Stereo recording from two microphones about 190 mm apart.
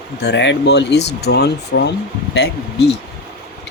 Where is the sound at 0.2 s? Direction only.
65° left (ahead or behind).